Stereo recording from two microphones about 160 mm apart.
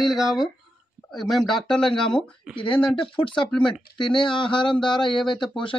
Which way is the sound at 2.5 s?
30° left (ahead or behind).